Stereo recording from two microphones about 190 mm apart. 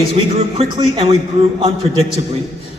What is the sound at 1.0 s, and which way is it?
Speech, 30° right (ahead or behind).